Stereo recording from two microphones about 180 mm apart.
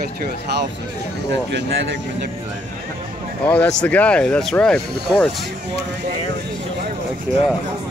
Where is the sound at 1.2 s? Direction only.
70° right (ahead or behind).